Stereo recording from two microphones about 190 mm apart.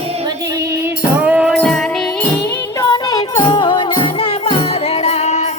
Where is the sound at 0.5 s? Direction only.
10° right (ahead or behind).